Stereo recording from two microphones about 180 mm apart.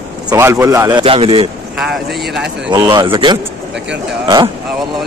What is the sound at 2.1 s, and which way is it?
Speech, centre (ahead or behind).